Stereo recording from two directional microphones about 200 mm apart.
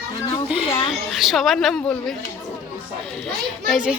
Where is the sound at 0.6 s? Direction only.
30° left (ahead or behind).